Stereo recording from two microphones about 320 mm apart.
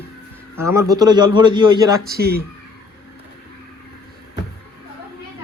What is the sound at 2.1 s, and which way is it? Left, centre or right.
Speech, right.